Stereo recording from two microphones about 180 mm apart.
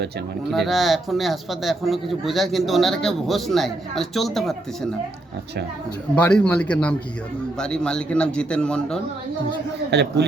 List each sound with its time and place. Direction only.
0.5 s speech: centre (ahead or behind)
6.1 s a man's voice: 5° left (ahead or behind)
9.9 s a man's voice: 70° right (ahead or behind)